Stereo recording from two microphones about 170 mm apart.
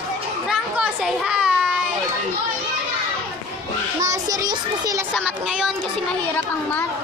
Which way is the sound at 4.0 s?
20° right (ahead or behind).